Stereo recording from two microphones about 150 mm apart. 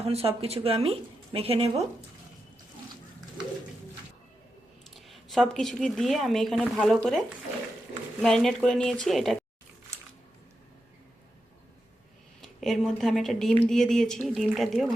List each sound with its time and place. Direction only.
0.0 s speech: 40° right (ahead or behind)
4.9 s speech: centre (ahead or behind)
8.2 s speech: 5° left (ahead or behind)
12.4 s speech: centre (ahead or behind)